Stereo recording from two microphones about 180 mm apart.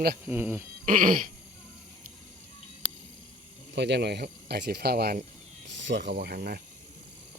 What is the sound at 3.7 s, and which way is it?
Speech, 70° right (ahead or behind).